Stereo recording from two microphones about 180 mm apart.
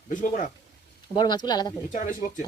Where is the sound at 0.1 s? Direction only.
45° left (ahead or behind).